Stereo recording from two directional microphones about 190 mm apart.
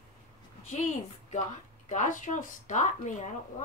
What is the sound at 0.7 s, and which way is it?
A woman's voice, 40° left (ahead or behind).